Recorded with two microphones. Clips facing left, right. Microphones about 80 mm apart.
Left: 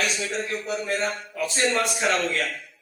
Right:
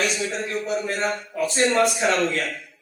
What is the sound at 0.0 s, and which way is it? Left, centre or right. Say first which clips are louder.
A man's voice: right 2 dB; right.